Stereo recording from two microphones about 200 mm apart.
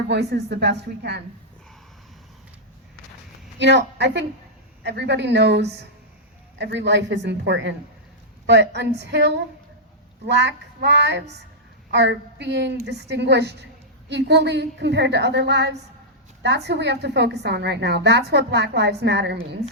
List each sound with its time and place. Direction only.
0.1 s a woman's voice: 60° right (ahead or behind)
3.6 s a woman's voice: 60° right (ahead or behind)